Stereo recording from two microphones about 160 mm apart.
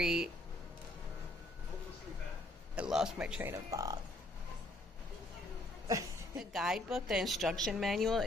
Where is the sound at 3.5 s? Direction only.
20° right (ahead or behind).